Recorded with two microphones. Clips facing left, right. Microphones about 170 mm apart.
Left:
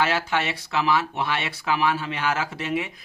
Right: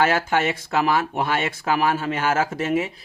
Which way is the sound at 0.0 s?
50° right (ahead or behind).